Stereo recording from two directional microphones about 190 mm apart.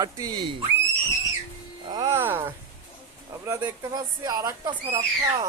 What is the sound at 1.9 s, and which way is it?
Speech, 15° right (ahead or behind).